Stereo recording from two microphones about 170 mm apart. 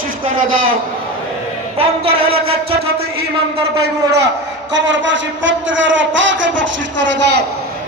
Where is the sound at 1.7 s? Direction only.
35° right (ahead or behind).